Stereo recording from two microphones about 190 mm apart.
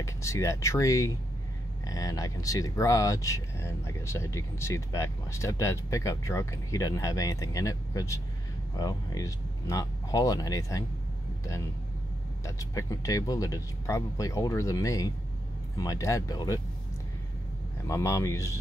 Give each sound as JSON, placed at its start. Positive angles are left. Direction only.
{"t": 0.0, "sound": "speech", "side_deg": 15}
{"t": 12.4, "sound": "speech", "side_deg": 15}
{"t": 17.8, "sound": "speech", "side_deg": 15}